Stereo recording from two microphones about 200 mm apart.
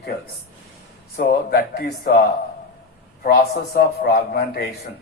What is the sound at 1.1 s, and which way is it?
Speech, 50° left (ahead or behind).